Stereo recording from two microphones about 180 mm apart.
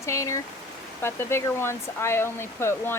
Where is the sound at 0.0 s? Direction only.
15° left (ahead or behind).